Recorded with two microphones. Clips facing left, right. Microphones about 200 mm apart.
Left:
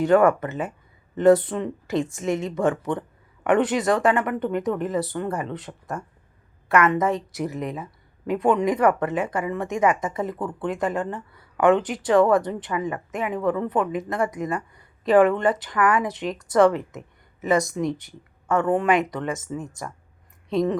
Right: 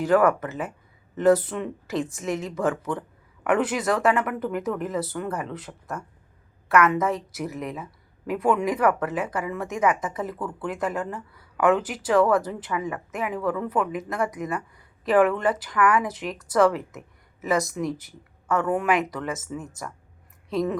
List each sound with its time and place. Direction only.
0.0 s a woman's voice: centre (ahead or behind)
10.3 s speech: 25° left (ahead or behind)
10.7 s a woman's voice: centre (ahead or behind)
13.3 s speech: 25° left (ahead or behind)
13.9 s a woman's voice: centre (ahead or behind)